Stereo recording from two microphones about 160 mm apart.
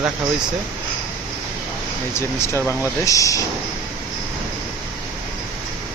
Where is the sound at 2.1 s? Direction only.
15° left (ahead or behind).